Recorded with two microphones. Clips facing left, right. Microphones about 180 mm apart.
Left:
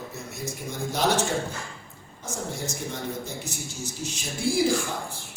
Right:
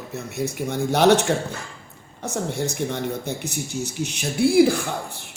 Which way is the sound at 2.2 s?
65° right (ahead or behind).